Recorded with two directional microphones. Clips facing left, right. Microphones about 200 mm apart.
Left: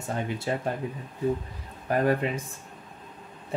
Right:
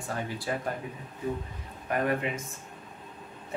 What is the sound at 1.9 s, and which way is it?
Speech, 35° left (ahead or behind).